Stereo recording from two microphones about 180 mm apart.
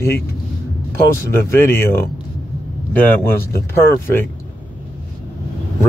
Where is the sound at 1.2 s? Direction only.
15° left (ahead or behind).